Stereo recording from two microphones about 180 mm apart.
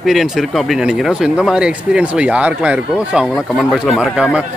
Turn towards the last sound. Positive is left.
turn(degrees=-5)  # may be behind; listen again after turning